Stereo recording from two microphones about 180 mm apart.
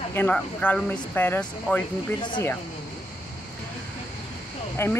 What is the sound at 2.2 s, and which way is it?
Speech, 25° left (ahead or behind).